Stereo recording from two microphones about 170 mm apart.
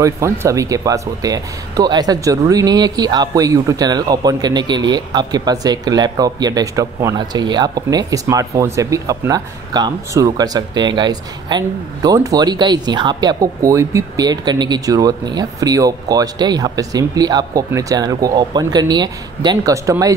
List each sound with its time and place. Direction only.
0.0 s speech: 15° right (ahead or behind)